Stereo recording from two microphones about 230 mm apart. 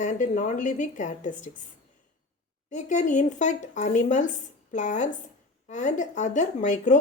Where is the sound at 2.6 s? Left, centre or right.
Left.